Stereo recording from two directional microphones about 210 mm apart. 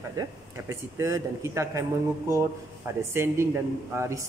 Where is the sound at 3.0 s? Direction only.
10° right (ahead or behind).